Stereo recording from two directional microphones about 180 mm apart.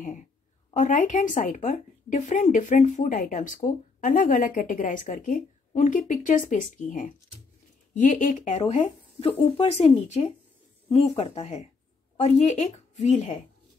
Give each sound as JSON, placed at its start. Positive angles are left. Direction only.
{"t": 0.0, "sound": "speech", "side_deg": 45}